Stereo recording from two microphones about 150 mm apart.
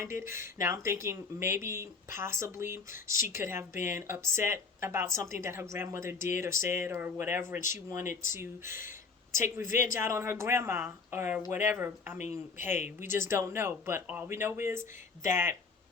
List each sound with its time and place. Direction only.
0.0 s speech: 15° right (ahead or behind)
9.9 s speech: 15° right (ahead or behind)